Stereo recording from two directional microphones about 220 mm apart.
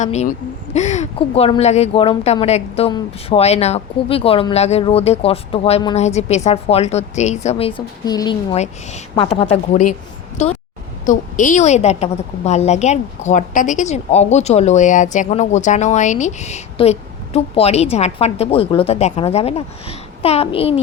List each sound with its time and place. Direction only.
0.0 s a woman's voice: 30° left (ahead or behind)
8.5 s a woman's voice: 30° left (ahead or behind)